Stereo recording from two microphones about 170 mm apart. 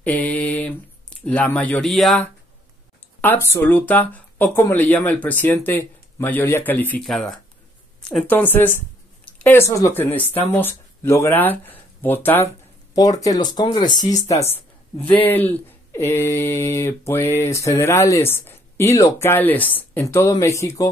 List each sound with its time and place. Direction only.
0.0 s mantra: 10° left (ahead or behind)
1.2 s speech: 5° left (ahead or behind)
12.9 s speech: 20° left (ahead or behind)
14.3 s a woman's voice: 40° left (ahead or behind)
15.1 s speech: 10° left (ahead or behind)